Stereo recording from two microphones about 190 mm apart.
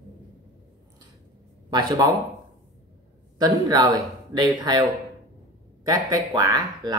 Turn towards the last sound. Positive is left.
turn(degrees=-20)  # may be behind; listen again after turning